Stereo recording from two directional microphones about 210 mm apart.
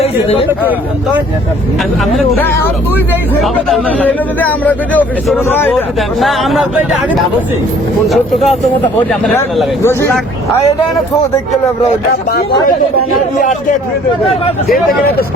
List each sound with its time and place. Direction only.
0.0 s a man's voice: 25° left (ahead or behind)
3.4 s speech: 5° left (ahead or behind)
8.0 s speech: centre (ahead or behind)
9.8 s speech: 10° left (ahead or behind)
13.4 s speech: 40° left (ahead or behind)